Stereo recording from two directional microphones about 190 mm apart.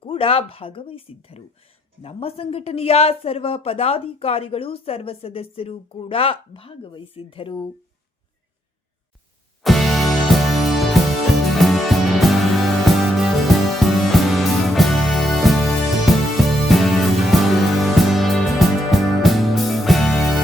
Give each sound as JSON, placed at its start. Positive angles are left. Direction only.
{"t": 0.0, "sound": "speech", "side_deg": 30}
{"t": 9.6, "sound": "music", "side_deg": 0}